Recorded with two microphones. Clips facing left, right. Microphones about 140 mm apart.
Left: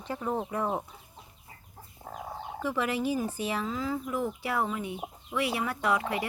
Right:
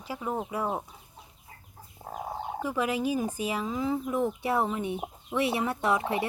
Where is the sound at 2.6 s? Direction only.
15° right (ahead or behind).